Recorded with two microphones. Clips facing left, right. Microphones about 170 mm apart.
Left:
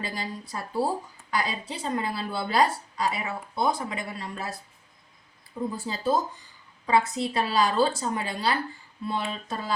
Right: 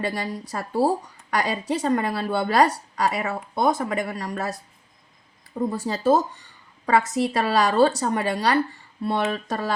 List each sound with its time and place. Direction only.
0.0 s speech: 70° right (ahead or behind); by 4.0 s 50° right (ahead or behind)
5.7 s speech: 75° right (ahead or behind)